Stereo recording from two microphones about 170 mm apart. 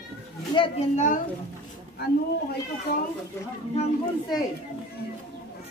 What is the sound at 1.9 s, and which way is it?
Speech, 70° left (ahead or behind).